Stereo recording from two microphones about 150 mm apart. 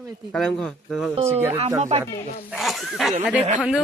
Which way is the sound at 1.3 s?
15° right (ahead or behind).